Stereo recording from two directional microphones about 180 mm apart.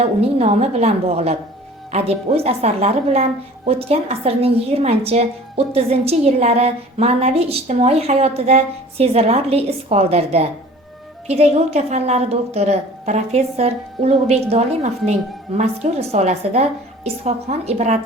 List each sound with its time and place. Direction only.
0.0 s a woman's voice: 35° right (ahead or behind)